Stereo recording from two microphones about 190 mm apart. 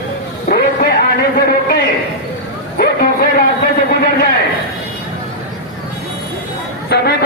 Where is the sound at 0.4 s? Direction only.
45° left (ahead or behind).